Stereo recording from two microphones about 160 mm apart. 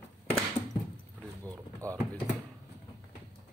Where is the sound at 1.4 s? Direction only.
20° right (ahead or behind).